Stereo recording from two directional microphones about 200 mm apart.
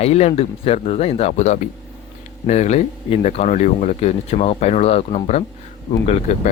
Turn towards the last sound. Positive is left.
turn(degrees=35)  # may be behind; listen again after turning